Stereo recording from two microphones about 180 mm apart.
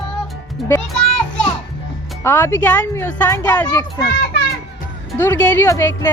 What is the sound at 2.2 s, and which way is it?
Speech, 15° left (ahead or behind).